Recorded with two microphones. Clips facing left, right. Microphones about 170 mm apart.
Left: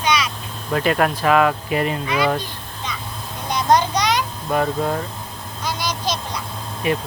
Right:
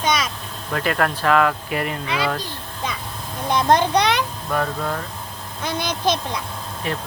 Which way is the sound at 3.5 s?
55° right (ahead or behind).